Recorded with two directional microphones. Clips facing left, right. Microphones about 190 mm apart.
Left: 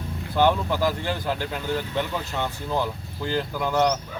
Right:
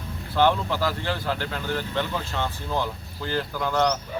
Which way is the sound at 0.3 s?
15° left (ahead or behind).